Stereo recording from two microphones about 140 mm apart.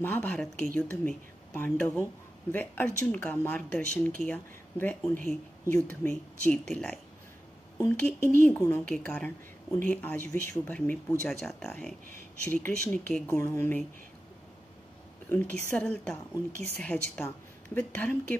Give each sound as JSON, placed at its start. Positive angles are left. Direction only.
{"t": 0.0, "sound": "speech", "side_deg": 15}
{"t": 15.2, "sound": "speech", "side_deg": 10}